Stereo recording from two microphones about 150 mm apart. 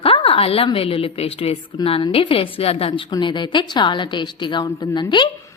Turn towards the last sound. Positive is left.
turn(degrees=30)  # may be behind; listen again after turning